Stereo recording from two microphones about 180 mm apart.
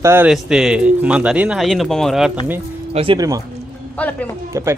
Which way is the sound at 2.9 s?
25° right (ahead or behind).